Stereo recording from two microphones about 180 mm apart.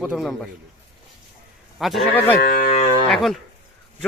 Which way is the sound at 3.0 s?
Centre (ahead or behind).